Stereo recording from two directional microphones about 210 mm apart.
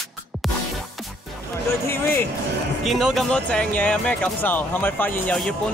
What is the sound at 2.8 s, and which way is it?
Speech, centre (ahead or behind).